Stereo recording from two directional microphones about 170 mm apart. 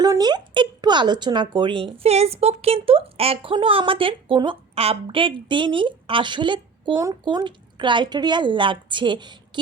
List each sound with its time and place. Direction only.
0.0 s speech: 25° right (ahead or behind)